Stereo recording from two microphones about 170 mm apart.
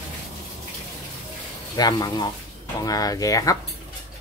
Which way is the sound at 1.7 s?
25° left (ahead or behind).